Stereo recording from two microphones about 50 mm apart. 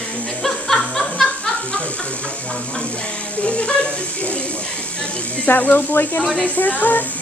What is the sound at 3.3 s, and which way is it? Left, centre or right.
Speech, left.